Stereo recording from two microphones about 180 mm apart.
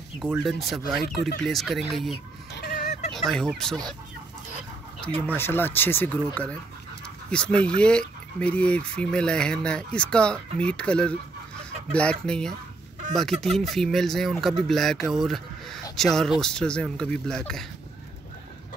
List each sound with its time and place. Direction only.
0.2 s speech: centre (ahead or behind)
2.5 s fowl: 55° left (ahead or behind)
3.1 s speech: 5° left (ahead or behind)
5.2 s speech: 10° left (ahead or behind)